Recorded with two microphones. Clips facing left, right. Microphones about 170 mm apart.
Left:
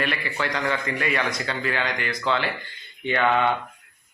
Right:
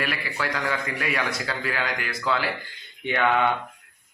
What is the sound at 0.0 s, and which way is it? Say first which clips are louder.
A man's voice: left 2 dB; 5° right (ahead or behind).